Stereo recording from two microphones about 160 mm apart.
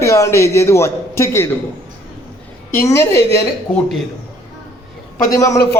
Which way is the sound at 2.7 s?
15° left (ahead or behind).